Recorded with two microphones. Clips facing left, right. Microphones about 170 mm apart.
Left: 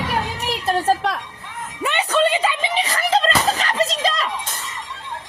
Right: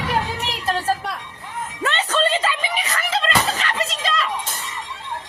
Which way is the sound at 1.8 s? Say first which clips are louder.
Left 3 dB; 15° left (ahead or behind).